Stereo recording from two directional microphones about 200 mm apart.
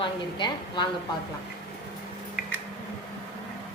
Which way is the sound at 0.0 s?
20° left (ahead or behind).